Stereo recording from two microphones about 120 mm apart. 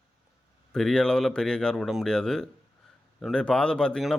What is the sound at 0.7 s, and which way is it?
Speech, 5° left (ahead or behind).